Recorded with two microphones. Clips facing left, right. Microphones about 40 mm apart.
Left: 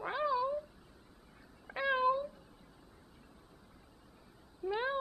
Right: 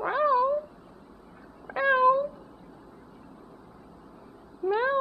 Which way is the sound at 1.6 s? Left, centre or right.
Right.